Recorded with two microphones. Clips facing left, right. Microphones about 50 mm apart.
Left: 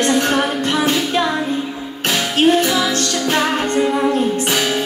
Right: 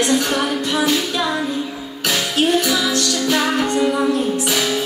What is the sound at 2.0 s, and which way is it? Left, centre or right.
Music, left.